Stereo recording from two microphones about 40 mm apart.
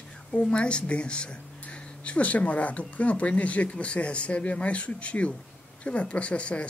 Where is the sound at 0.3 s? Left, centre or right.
Left.